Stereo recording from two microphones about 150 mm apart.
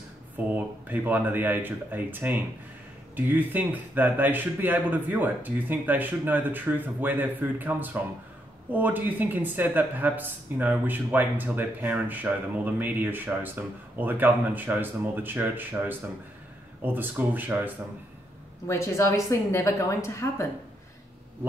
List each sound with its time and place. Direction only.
0.6 s speech: 10° right (ahead or behind)
18.7 s a woman's voice: 20° left (ahead or behind)